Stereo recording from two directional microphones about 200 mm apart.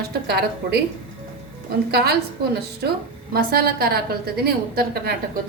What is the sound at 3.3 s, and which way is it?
A woman's voice, 50° right (ahead or behind).